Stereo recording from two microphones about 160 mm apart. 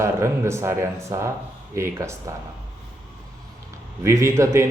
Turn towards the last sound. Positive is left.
turn(degrees=-15)  # may be behind; listen again after turning